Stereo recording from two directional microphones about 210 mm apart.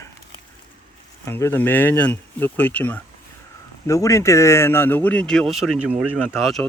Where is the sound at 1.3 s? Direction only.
10° left (ahead or behind).